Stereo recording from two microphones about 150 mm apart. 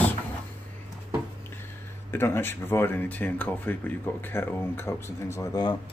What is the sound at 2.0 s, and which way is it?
Speech, 15° left (ahead or behind).